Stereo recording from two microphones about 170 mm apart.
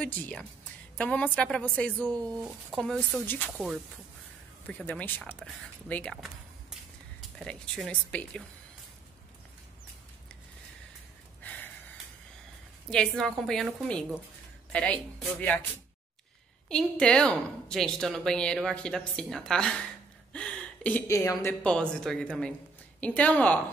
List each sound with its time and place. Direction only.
0.0 s speech: 10° left (ahead or behind)
2.1 s speech: 20° right (ahead or behind)
2.7 s a woman's voice: 5° left (ahead or behind)
4.6 s speech: 10° left (ahead or behind)
6.2 s a sound: centre (ahead or behind)
11.4 s a sound: 10° left (ahead or behind)
12.9 s a woman's voice: 5° left (ahead or behind)
16.6 s a woman's voice: 5° left (ahead or behind)
21.6 s a woman's voice: 5° left (ahead or behind)